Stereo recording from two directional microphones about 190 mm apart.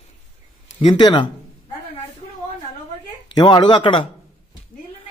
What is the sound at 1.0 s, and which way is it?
Speech, 25° left (ahead or behind).